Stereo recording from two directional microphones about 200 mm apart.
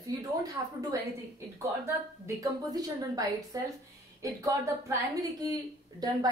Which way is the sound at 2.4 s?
20° right (ahead or behind).